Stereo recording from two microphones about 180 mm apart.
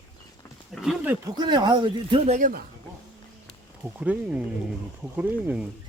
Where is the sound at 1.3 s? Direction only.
25° right (ahead or behind).